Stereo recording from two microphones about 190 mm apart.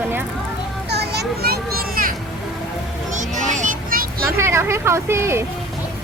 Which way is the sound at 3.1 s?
40° right (ahead or behind).